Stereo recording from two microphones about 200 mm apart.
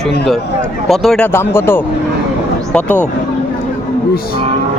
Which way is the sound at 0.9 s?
Centre (ahead or behind).